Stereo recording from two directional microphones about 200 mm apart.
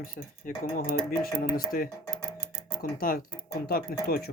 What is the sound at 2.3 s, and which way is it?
Music, 25° left (ahead or behind).